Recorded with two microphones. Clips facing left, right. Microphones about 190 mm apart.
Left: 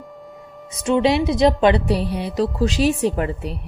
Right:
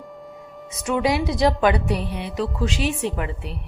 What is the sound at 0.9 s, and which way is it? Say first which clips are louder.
A woman's voice: left 4 dB; 25° left (ahead or behind).